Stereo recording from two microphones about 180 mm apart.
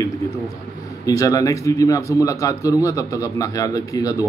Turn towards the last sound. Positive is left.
turn(degrees=20)  # may be behind; listen again after turning